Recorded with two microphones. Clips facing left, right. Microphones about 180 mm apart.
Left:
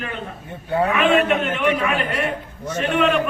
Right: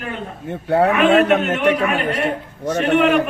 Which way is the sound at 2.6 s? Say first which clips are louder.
Right 4 dB; 60° right (ahead or behind).